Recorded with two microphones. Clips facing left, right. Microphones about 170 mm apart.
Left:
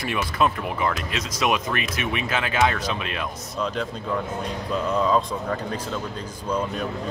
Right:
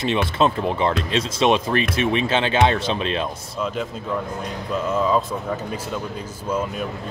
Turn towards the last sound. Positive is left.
turn(degrees=-5)  # may be behind; listen again after turning